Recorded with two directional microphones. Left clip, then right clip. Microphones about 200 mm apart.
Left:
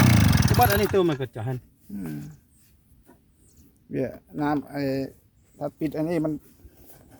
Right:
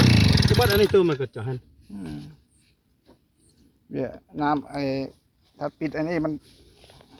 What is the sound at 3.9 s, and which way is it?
Speech, 25° left (ahead or behind).